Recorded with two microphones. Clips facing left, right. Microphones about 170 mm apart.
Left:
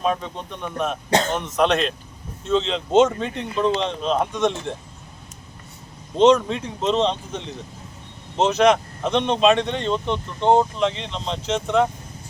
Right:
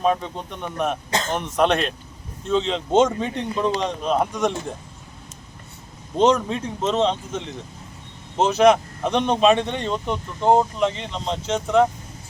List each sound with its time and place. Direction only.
0.0 s speech: centre (ahead or behind)
1.3 s speech: 30° right (ahead or behind)
1.5 s speech: 5° right (ahead or behind)
6.1 s speech: 5° right (ahead or behind)